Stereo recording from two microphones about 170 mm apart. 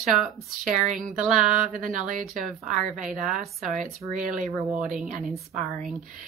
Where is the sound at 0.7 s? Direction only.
50° right (ahead or behind).